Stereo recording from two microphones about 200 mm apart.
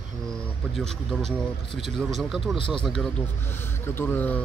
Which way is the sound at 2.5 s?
25° left (ahead or behind).